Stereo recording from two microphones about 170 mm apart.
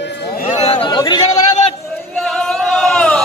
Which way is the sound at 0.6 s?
35° left (ahead or behind).